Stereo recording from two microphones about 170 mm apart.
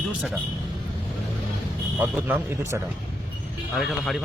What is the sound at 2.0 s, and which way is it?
Speech, 10° right (ahead or behind).